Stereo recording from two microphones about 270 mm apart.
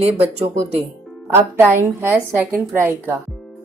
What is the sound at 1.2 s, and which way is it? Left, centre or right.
A woman's voice, centre.